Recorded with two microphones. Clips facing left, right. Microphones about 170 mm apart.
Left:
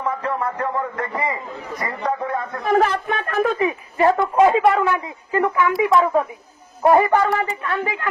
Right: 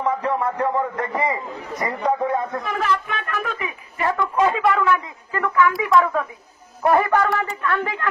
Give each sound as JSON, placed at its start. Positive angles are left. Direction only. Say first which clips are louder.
{"t": 0.0, "sound": "a sound", "louder": "right 2 dB", "side_deg": -15}
{"t": 2.0, "sound": "speech", "louder": "right 3 dB", "side_deg": -20}
{"t": 2.6, "sound": "speech", "louder": "left 6 dB", "side_deg": 45}
{"t": 3.5, "sound": "speech", "louder": "left 9 dB", "side_deg": 30}
{"t": 7.7, "sound": "a woman's voice", "louder": "right 1 dB", "side_deg": 10}